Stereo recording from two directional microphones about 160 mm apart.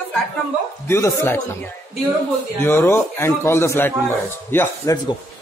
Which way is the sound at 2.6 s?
15° left (ahead or behind).